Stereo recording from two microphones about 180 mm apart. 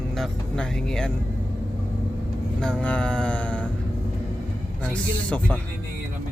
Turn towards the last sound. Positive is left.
turn(degrees=5)  # may be behind; listen again after turning